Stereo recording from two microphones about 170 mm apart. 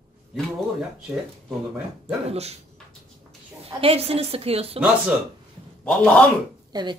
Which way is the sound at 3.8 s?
35° right (ahead or behind).